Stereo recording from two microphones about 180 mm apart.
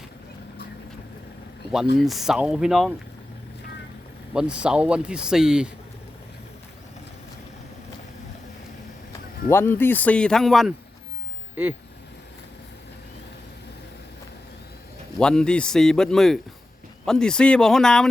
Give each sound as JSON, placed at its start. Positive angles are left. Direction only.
{"t": 2.0, "sound": "speech", "side_deg": 0}
{"t": 4.4, "sound": "speech", "side_deg": -5}
{"t": 9.5, "sound": "speech", "side_deg": 10}
{"t": 15.2, "sound": "speech", "side_deg": 5}